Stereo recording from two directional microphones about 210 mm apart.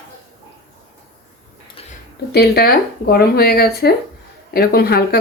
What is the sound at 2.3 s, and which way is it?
Speech, 50° left (ahead or behind).